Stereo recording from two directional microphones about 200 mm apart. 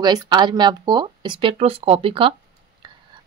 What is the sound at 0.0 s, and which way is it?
Speech, 20° right (ahead or behind).